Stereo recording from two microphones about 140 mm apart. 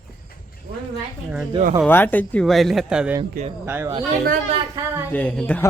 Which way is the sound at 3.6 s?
15° right (ahead or behind).